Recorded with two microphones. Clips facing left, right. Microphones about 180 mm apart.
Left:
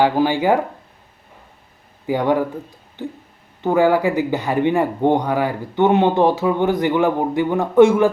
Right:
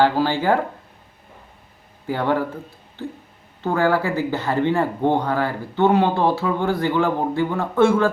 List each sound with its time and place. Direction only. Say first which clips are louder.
0.0 s speech: left 2 dB; 15° left (ahead or behind)
2.0 s speech: left 3 dB; 15° left (ahead or behind)